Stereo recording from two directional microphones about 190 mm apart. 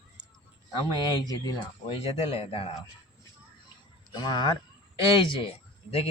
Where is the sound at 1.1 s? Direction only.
20° left (ahead or behind).